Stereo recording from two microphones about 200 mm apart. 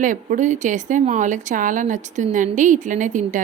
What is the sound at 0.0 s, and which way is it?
Speech, 40° right (ahead or behind).